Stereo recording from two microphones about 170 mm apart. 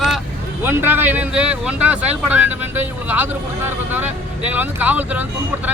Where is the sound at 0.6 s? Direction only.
10° right (ahead or behind).